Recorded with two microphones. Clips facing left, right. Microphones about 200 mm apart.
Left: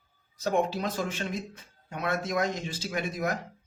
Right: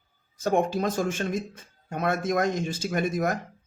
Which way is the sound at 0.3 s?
50° right (ahead or behind).